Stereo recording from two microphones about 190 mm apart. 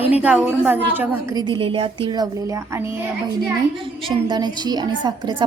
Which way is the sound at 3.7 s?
30° right (ahead or behind).